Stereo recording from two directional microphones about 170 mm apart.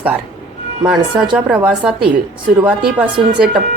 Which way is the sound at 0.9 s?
5° right (ahead or behind).